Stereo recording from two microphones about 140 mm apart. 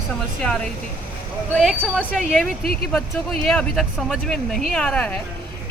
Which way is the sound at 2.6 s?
90° left.